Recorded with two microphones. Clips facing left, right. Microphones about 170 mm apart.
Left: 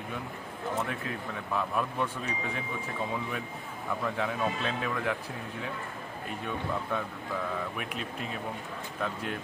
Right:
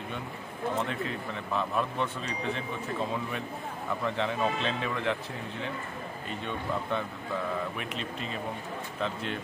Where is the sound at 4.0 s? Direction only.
5° left (ahead or behind).